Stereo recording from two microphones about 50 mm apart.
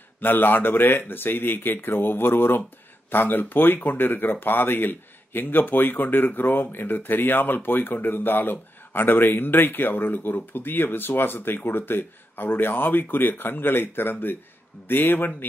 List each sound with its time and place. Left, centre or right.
0.2 s speech: left